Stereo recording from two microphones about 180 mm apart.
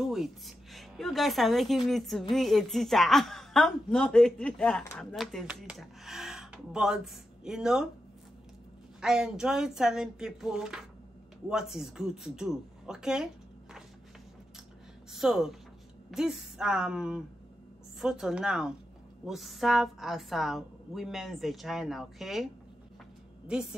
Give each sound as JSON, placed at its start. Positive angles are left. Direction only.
{"t": 0.0, "sound": "a woman's voice", "side_deg": 0}
{"t": 9.0, "sound": "a woman's voice", "side_deg": -5}
{"t": 15.1, "sound": "a woman's voice", "side_deg": 0}